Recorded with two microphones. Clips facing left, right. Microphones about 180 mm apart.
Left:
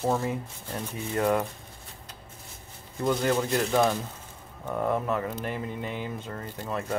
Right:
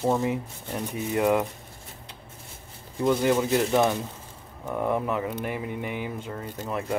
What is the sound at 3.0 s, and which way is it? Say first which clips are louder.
Speech: right 3 dB; 10° right (ahead or behind).